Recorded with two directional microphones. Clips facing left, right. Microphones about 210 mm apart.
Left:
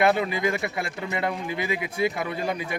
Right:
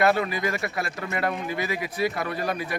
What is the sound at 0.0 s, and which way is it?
A man's voice, 20° left (ahead or behind).